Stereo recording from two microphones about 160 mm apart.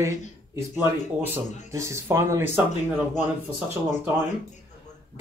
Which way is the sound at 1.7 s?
20° right (ahead or behind).